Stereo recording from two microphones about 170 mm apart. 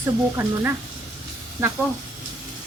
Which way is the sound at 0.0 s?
15° right (ahead or behind).